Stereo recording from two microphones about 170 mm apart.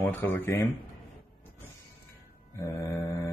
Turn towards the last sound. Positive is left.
turn(degrees=15)  # may be behind; listen again after turning